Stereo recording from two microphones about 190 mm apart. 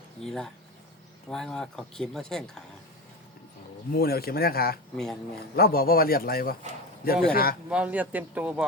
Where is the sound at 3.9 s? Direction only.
55° left (ahead or behind).